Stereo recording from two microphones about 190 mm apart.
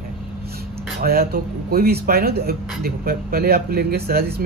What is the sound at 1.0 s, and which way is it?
Speech, 55° right (ahead or behind).